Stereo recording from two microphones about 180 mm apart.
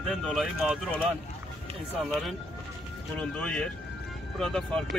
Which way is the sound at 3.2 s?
5° left (ahead or behind).